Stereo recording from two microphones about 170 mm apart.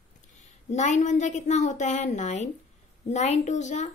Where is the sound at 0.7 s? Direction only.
45° left (ahead or behind).